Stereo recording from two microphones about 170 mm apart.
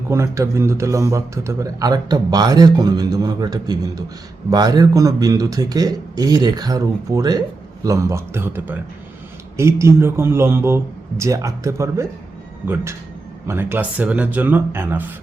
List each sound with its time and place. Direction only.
0.1 s a man's voice: 15° right (ahead or behind)